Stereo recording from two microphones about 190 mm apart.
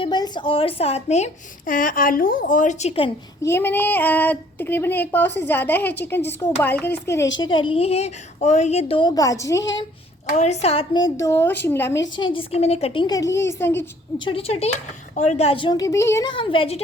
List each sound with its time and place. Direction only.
0.0 s a woman's voice: 25° left (ahead or behind)
3.4 s speech: 10° left (ahead or behind)
7.4 s a woman's voice: 25° left (ahead or behind)
10.3 s a woman's voice: 35° left (ahead or behind); by 11.9 s 10° left (ahead or behind)
12.1 s a woman's voice: 25° left (ahead or behind)
14.3 s a woman's voice: 30° left (ahead or behind)